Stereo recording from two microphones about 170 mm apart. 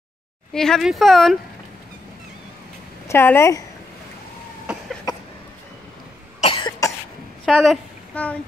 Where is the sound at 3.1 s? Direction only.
15° left (ahead or behind).